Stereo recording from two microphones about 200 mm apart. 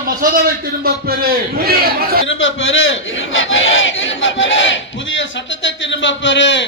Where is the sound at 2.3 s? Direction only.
75° left (ahead or behind).